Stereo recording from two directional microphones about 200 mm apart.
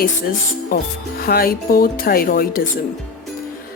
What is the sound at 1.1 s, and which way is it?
Speech, 50° left (ahead or behind).